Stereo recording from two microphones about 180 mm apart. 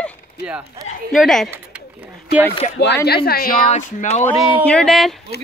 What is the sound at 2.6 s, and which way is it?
Speech, 40° left (ahead or behind).